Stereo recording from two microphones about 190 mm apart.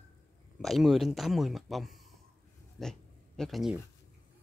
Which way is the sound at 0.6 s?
Centre (ahead or behind).